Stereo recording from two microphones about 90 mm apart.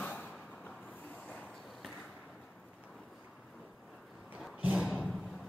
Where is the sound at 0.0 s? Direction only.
15° left (ahead or behind).